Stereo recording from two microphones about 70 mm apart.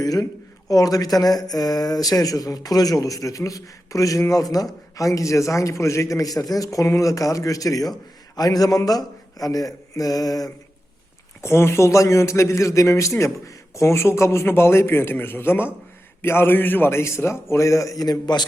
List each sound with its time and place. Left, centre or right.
0.0 s a man's voice: left
11.3 s a man's voice: left